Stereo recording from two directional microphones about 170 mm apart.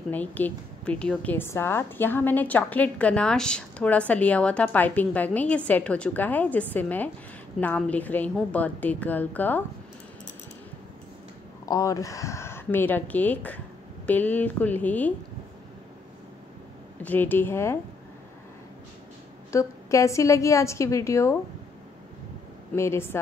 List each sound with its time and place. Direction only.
0.1 s a woman's voice: 10° left (ahead or behind)
11.6 s a woman's voice: 20° left (ahead or behind)
17.0 s a woman's voice: 10° left (ahead or behind)
19.5 s a woman's voice: 15° left (ahead or behind)
22.8 s a woman's voice: 15° left (ahead or behind)